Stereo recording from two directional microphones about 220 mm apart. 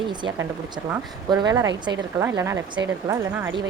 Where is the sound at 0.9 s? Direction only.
20° right (ahead or behind).